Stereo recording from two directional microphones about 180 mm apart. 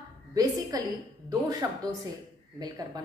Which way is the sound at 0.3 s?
20° right (ahead or behind).